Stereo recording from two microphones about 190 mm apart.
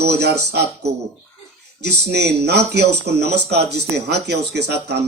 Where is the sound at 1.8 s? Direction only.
60° right (ahead or behind).